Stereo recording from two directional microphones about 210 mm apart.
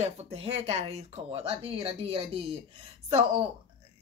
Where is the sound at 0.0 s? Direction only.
30° right (ahead or behind).